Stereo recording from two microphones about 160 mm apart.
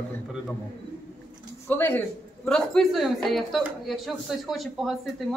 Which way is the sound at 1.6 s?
10° left (ahead or behind).